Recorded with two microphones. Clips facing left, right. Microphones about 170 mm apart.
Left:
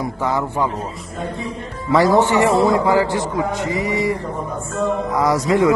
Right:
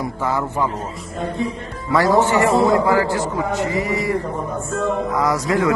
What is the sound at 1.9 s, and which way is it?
A man's voice, 20° left (ahead or behind).